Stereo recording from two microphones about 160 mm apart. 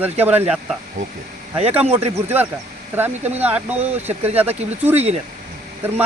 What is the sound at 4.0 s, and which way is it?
Speech, 40° right (ahead or behind).